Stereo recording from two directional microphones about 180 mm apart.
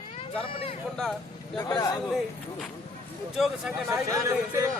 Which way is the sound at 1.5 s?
20° left (ahead or behind).